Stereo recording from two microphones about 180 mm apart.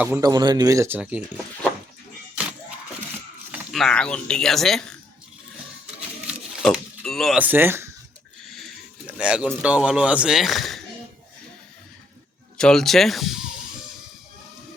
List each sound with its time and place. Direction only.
0.2 s speech: 20° right (ahead or behind)
2.4 s music: 5° right (ahead or behind)
3.5 s speech: centre (ahead or behind)
6.6 s speech: 5° left (ahead or behind); by 7.9 s 10° right (ahead or behind)
8.4 s speech: centre (ahead or behind)
12.5 s speech: 5° left (ahead or behind)